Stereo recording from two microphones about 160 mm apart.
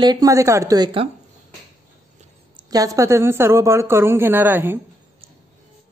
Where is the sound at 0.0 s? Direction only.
25° right (ahead or behind).